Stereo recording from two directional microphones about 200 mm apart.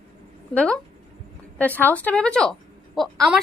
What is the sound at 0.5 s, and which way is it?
A woman's voice, 5° left (ahead or behind).